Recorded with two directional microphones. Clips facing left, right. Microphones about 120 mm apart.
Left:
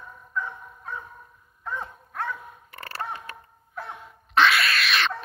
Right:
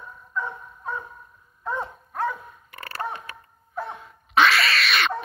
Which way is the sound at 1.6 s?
35° right (ahead or behind).